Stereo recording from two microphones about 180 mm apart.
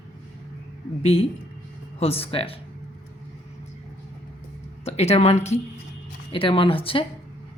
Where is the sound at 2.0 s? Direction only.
35° left (ahead or behind).